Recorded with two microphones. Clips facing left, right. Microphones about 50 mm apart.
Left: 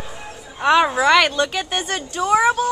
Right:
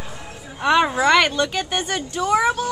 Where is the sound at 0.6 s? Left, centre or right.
Centre.